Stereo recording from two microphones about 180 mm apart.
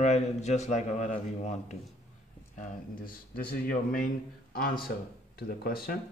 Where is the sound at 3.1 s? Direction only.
50° left (ahead or behind).